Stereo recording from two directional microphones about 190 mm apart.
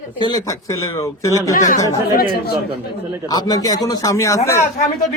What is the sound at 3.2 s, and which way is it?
Speech, 20° left (ahead or behind).